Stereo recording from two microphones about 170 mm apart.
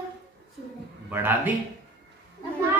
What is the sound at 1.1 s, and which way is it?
Speech, 10° right (ahead or behind).